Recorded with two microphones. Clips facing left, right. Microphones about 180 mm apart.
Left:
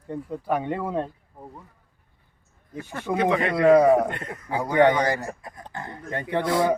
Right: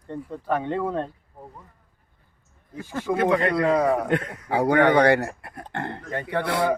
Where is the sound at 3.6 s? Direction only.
15° left (ahead or behind).